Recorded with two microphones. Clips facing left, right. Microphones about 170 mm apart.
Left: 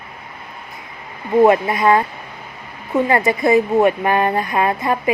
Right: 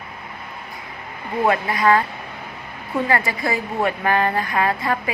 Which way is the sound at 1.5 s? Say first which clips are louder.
Left 4 dB; 25° left (ahead or behind).